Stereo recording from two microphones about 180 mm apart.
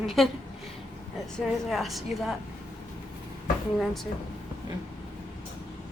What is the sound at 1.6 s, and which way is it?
Speech, centre (ahead or behind).